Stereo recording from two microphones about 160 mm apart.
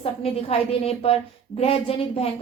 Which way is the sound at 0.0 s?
40° left (ahead or behind).